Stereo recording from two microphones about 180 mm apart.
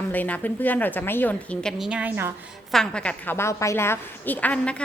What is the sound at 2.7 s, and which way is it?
A woman's voice, 5° left (ahead or behind).